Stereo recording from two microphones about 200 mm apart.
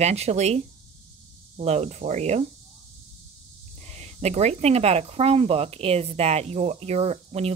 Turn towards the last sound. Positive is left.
turn(degrees=-30)  # may be behind; listen again after turning